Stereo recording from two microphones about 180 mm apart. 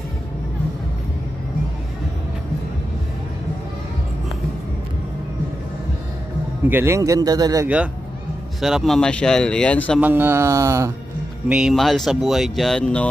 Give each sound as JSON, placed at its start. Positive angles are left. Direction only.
{"t": 6.7, "sound": "speech", "side_deg": -15}
{"t": 7.6, "sound": "speech", "side_deg": -5}
{"t": 9.9, "sound": "speech", "side_deg": -10}
{"t": 11.4, "sound": "speech", "side_deg": -5}